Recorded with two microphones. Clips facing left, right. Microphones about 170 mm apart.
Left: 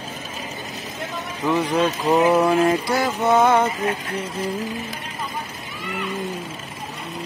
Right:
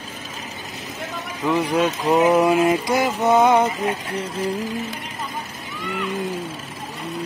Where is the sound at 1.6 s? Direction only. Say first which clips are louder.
Right 1 dB; centre (ahead or behind).